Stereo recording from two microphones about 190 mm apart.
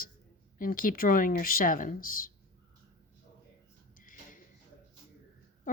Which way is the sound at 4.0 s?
45° left (ahead or behind).